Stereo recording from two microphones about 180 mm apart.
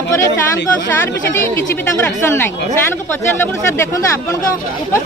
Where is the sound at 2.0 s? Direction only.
10° left (ahead or behind).